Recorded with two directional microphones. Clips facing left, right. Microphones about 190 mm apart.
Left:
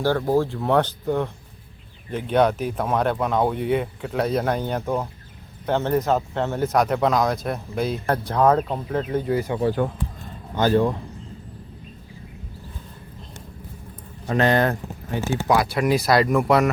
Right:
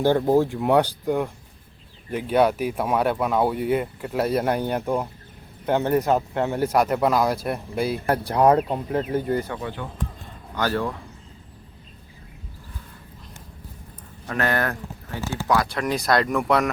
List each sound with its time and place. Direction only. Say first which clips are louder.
0.0 s speech: right 2 dB; 20° right (ahead or behind); by 9.5 s 5° left (ahead or behind)
9.6 s speech: left 10 dB; 35° left (ahead or behind)
10.5 s speech: left 6 dB; 20° left (ahead or behind)
14.3 s speech: left 5 dB; 20° left (ahead or behind); by 16.6 s 5° left (ahead or behind)